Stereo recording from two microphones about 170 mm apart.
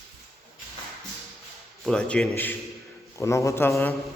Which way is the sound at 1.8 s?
5° left (ahead or behind).